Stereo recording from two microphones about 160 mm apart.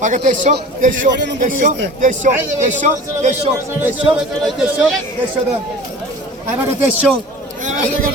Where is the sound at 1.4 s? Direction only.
55° right (ahead or behind).